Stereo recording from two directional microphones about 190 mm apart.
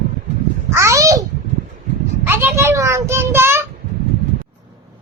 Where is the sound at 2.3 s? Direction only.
10° right (ahead or behind).